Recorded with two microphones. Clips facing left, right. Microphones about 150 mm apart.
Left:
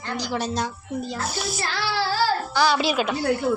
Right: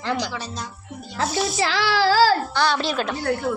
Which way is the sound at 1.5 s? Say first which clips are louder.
Right 5 dB; 90° right.